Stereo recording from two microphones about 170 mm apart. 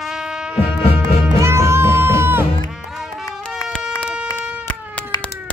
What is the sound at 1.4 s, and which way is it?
Music, 15° right (ahead or behind).